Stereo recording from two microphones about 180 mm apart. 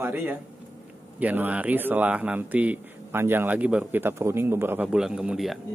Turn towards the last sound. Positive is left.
turn(degrees=0)  # may be behind; listen again after turning